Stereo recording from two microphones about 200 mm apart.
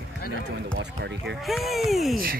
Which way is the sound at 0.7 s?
60° right (ahead or behind).